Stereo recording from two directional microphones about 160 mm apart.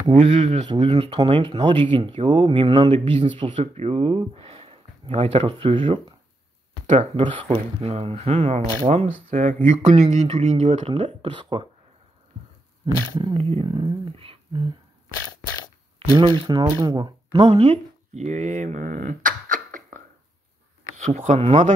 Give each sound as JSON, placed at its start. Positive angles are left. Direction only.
{"t": 0.0, "sound": "speech", "side_deg": -35}
{"t": 3.5, "sound": "speech", "side_deg": -40}
{"t": 7.2, "sound": "speech", "side_deg": -30}
{"t": 11.1, "sound": "speech", "side_deg": -35}
{"t": 12.8, "sound": "speech", "side_deg": -30}
{"t": 16.1, "sound": "speech", "side_deg": -25}
{"t": 21.1, "sound": "speech", "side_deg": -45}